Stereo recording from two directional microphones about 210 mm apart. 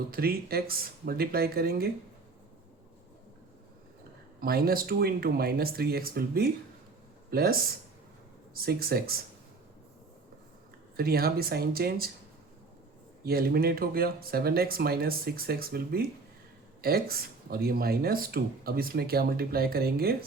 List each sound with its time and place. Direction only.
0.1 s speech: 45° right (ahead or behind)
4.4 s speech: 45° right (ahead or behind)
10.9 s speech: 45° right (ahead or behind)
13.2 s speech: 45° right (ahead or behind)